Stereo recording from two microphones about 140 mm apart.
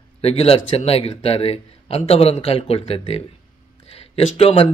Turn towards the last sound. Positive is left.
turn(degrees=45)  # may be behind; listen again after turning